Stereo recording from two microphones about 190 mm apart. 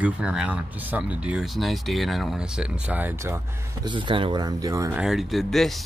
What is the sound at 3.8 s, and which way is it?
Speech, 25° right (ahead or behind).